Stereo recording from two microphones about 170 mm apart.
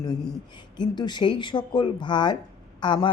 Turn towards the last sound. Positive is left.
turn(degrees=25)  # may be behind; listen again after turning